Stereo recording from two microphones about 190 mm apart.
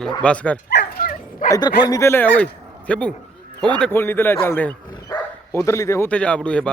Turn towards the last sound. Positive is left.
turn(degrees=5)  # may be behind; listen again after turning